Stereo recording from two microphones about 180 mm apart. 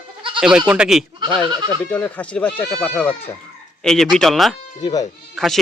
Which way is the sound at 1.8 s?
10° left (ahead or behind).